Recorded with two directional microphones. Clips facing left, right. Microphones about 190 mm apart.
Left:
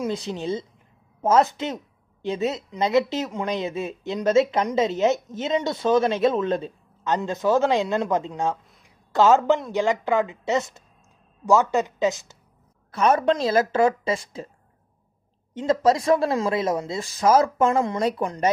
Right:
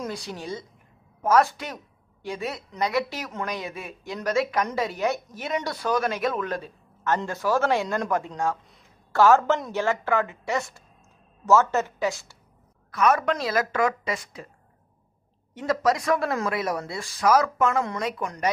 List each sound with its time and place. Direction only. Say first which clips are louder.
0.1 s speech: left 6 dB; 20° left (ahead or behind)
8.8 s a sound: left 1 dB; 20° left (ahead or behind)
9.7 s speech: left 3 dB; 15° left (ahead or behind)
15.5 s speech: left 4 dB; 25° left (ahead or behind)